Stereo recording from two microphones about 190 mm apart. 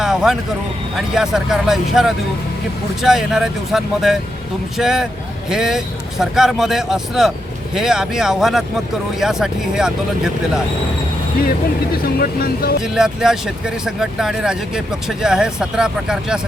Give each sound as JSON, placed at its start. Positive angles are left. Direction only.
{"t": 0.0, "sound": "a sound", "side_deg": -5}
{"t": 0.9, "sound": "speech", "side_deg": 0}
{"t": 12.0, "sound": "speech", "side_deg": 50}
{"t": 12.8, "sound": "speech", "side_deg": -5}